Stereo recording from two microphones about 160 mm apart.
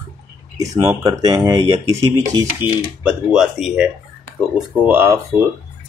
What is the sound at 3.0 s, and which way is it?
Speech, 5° right (ahead or behind).